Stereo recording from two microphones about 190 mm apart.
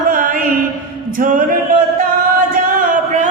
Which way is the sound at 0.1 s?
45° right (ahead or behind).